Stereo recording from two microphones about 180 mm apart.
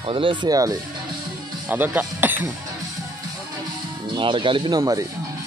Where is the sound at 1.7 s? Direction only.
10° right (ahead or behind).